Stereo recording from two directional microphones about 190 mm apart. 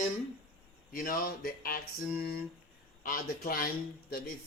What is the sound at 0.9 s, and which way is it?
Speech, 50° left (ahead or behind).